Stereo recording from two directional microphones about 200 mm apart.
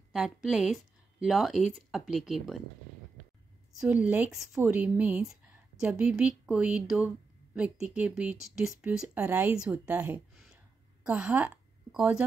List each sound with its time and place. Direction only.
0.1 s speech: centre (ahead or behind)
3.8 s a woman's voice: 5° right (ahead or behind)